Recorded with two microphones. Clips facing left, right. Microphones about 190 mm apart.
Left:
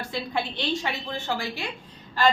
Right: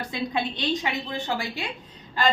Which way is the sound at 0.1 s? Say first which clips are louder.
Right 1 dB; 20° right (ahead or behind).